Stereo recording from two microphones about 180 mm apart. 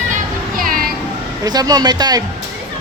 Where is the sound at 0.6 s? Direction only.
50° right (ahead or behind).